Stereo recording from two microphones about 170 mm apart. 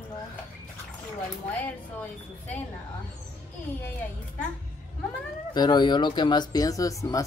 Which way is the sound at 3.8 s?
10° left (ahead or behind).